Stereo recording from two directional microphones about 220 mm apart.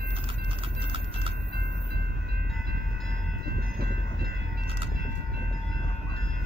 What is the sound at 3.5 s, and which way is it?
Train, 45° right (ahead or behind).